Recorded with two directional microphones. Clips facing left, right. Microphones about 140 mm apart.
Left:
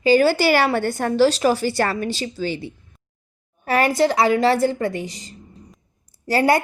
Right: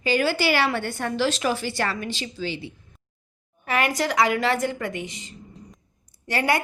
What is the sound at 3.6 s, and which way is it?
A woman's voice, 35° left (ahead or behind).